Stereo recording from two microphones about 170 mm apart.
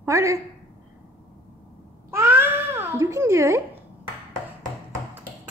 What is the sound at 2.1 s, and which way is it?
Babbling, 15° right (ahead or behind).